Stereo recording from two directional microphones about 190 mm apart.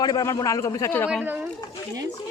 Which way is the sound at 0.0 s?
20° left (ahead or behind).